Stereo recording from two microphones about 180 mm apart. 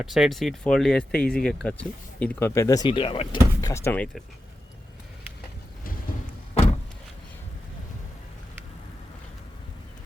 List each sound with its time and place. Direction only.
0.0 s speech: centre (ahead or behind)
6.5 s vehicle: 35° left (ahead or behind)